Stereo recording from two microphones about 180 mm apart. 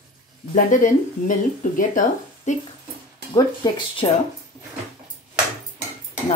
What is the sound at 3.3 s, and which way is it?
Speech, 25° left (ahead or behind).